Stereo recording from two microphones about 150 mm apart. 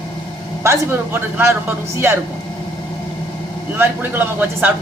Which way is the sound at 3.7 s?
15° right (ahead or behind).